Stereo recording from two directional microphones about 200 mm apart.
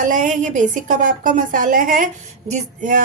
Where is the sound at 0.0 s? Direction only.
40° right (ahead or behind).